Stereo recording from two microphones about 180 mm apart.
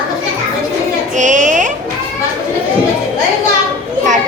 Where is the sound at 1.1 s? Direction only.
45° right (ahead or behind).